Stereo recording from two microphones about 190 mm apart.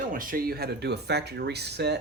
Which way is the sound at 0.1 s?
45° right (ahead or behind).